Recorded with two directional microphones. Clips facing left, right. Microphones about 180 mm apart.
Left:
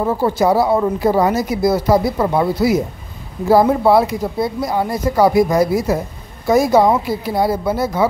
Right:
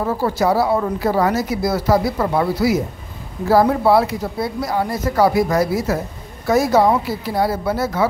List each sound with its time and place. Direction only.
0.0 s speech: 20° left (ahead or behind)